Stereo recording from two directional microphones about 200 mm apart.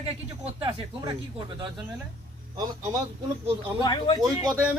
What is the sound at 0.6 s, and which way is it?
Speech, 20° right (ahead or behind).